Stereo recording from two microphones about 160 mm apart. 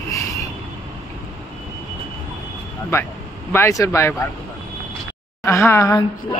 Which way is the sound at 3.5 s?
15° left (ahead or behind).